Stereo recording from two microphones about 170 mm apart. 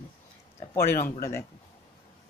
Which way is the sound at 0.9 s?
15° left (ahead or behind).